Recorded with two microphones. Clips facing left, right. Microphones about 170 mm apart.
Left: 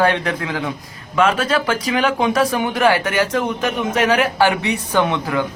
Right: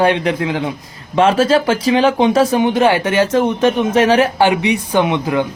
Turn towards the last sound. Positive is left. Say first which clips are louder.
# right 3 dB
turn(degrees=-20)  # may be behind; listen again after turning